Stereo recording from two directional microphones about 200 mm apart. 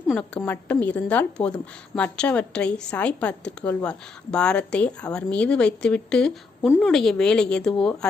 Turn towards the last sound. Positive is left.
turn(degrees=5)  # may be behind; listen again after turning